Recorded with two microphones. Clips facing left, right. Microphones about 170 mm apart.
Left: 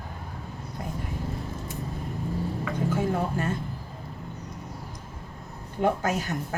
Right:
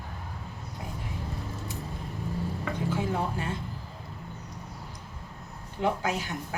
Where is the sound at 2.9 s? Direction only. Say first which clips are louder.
Left 3 dB; 45° left (ahead or behind).